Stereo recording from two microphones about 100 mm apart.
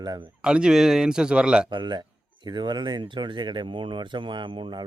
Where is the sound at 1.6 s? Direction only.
50° right (ahead or behind).